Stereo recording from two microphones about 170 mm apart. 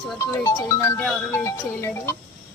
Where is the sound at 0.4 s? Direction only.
15° left (ahead or behind).